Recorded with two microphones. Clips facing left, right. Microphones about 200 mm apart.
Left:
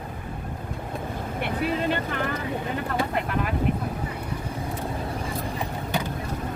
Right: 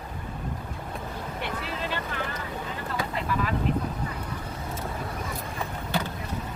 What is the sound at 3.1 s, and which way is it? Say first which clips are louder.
Vehicle: left 2 dB; 55° left (ahead or behind).